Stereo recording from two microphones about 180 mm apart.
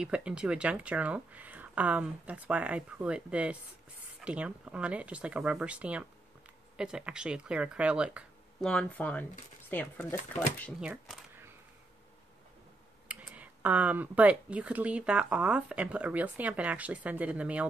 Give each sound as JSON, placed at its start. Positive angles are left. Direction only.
{"t": 0.0, "sound": "speech", "side_deg": -5}
{"t": 8.6, "sound": "speech", "side_deg": 5}
{"t": 10.8, "sound": "speech", "side_deg": -5}
{"t": 13.1, "sound": "speech", "side_deg": -10}